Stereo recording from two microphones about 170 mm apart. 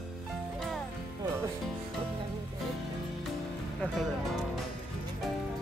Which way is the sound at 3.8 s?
Centre (ahead or behind).